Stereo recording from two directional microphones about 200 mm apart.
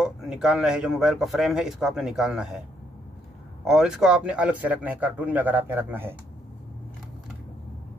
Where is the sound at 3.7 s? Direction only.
5° right (ahead or behind).